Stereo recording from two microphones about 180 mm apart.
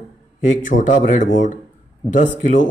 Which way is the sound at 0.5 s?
45° left (ahead or behind).